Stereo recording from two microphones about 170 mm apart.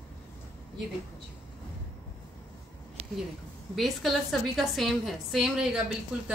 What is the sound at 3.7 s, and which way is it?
A woman's voice, centre (ahead or behind).